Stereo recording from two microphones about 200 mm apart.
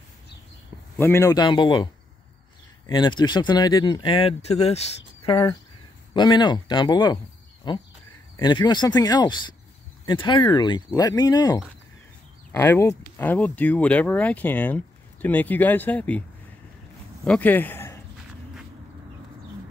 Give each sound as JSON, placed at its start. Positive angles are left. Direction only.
{"t": 0.9, "sound": "speech", "side_deg": 10}
{"t": 2.9, "sound": "speech", "side_deg": 20}